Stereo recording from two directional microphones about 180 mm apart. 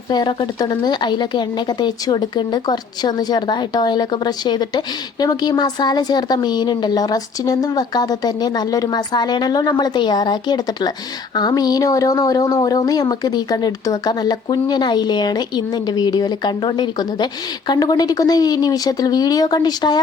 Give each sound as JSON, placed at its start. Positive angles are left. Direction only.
{"t": 0.1, "sound": "speech", "side_deg": 25}